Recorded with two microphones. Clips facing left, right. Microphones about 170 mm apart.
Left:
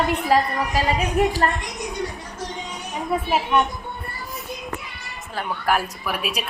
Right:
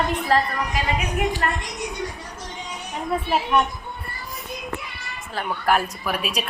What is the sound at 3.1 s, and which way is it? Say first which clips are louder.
Speech: left 1 dB; 5° left (ahead or behind).